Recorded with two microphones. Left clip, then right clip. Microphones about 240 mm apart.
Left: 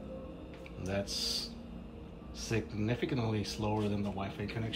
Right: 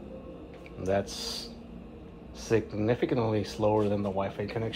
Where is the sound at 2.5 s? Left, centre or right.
Centre.